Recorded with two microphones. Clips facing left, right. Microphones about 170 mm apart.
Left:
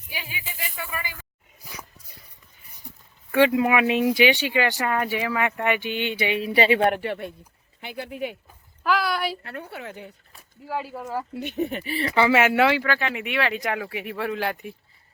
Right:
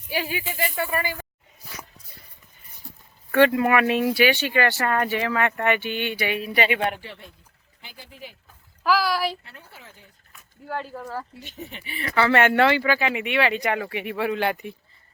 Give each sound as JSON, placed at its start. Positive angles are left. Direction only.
{"t": 0.1, "sound": "speech", "side_deg": -65}
{"t": 2.8, "sound": "a sound", "side_deg": 15}
{"t": 3.3, "sound": "speech", "side_deg": 10}
{"t": 6.8, "sound": "speech", "side_deg": 60}
{"t": 8.8, "sound": "speech", "side_deg": 0}
{"t": 9.4, "sound": "a woman's voice", "side_deg": 65}
{"t": 10.7, "sound": "speech", "side_deg": 5}
{"t": 11.3, "sound": "speech", "side_deg": 60}
{"t": 12.3, "sound": "speech", "side_deg": 5}